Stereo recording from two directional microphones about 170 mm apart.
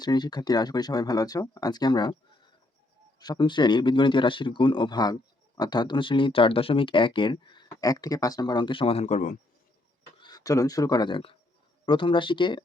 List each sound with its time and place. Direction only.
0.0 s speech: 25° left (ahead or behind)
3.2 s speech: 25° left (ahead or behind); by 9.4 s 45° left (ahead or behind)
10.2 s speech: 25° left (ahead or behind)